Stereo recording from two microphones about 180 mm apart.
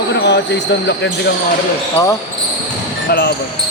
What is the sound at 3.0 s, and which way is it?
Speech, 65° left (ahead or behind).